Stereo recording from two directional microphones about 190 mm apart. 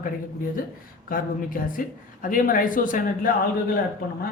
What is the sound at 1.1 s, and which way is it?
Speech, 45° left (ahead or behind).